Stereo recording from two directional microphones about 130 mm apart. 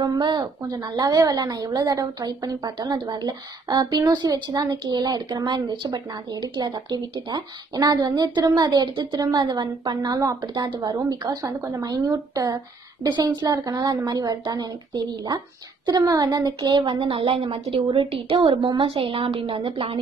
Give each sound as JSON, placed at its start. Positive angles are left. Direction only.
{"t": 0.0, "sound": "a woman's voice", "side_deg": -35}